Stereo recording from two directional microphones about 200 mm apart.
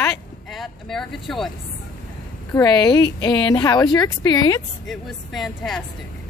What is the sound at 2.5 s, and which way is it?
A woman's voice, 20° left (ahead or behind).